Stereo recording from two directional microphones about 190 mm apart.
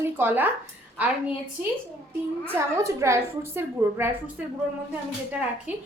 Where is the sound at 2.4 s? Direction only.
15° right (ahead or behind).